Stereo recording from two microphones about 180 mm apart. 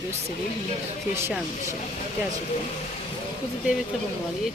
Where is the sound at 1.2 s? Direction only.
10° right (ahead or behind).